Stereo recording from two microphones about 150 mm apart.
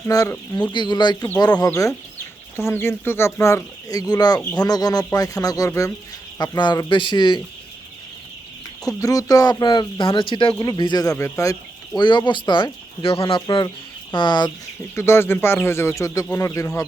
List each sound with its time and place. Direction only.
0.1 s a man's voice: 25° left (ahead or behind)
8.9 s speech: 25° left (ahead or behind)
11.9 s speech: 30° left (ahead or behind)
14.9 s a man's voice: 15° left (ahead or behind)